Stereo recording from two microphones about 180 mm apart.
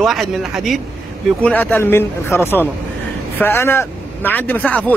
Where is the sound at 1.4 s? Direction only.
10° left (ahead or behind).